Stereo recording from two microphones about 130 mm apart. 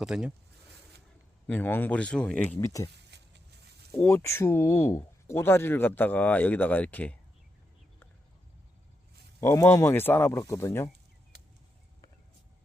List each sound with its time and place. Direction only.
0.0 s speech: 5° right (ahead or behind)
1.5 s speech: 15° left (ahead or behind)
3.9 s speech: 20° left (ahead or behind)
9.4 s speech: 20° left (ahead or behind)